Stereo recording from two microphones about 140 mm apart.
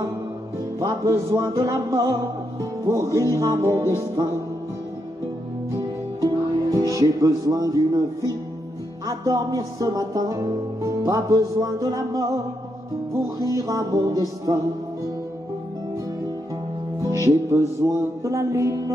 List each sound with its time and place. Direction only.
0.7 s music: 20° right (ahead or behind)
6.2 s music: 25° right (ahead or behind)
9.0 s music: 25° right (ahead or behind)
13.6 s music: 25° right (ahead or behind)
17.0 s music: 25° right (ahead or behind)